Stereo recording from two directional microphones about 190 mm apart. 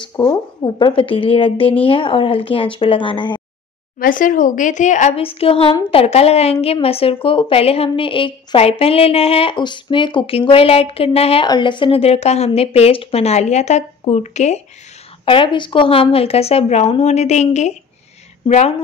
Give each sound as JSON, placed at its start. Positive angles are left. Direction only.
{"t": 0.2, "sound": "speech", "side_deg": 25}
{"t": 4.0, "sound": "speech", "side_deg": 45}
{"t": 15.2, "sound": "speech", "side_deg": 25}